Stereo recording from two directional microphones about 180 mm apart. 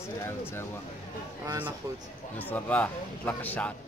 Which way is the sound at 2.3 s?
10° left (ahead or behind).